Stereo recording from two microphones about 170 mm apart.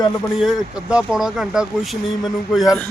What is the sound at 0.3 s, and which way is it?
A man's voice, 5° right (ahead or behind).